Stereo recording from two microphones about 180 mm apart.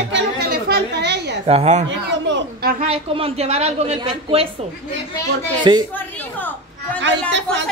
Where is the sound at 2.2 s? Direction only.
80° right.